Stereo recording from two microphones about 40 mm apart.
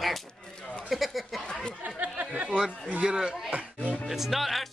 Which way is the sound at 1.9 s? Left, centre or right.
Right.